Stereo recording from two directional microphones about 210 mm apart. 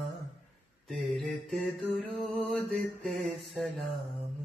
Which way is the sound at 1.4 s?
Centre (ahead or behind).